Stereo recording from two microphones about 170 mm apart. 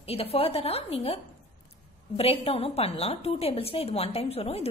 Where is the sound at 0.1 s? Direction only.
35° left (ahead or behind).